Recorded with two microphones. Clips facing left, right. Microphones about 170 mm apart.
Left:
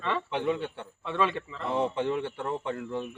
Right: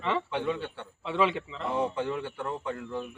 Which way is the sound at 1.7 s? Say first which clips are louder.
Left 2 dB; 25° left (ahead or behind).